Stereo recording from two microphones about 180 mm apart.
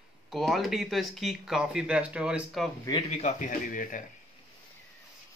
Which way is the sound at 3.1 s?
40° left (ahead or behind).